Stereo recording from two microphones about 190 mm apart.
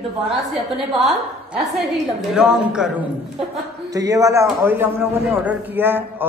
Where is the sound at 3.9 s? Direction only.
20° right (ahead or behind).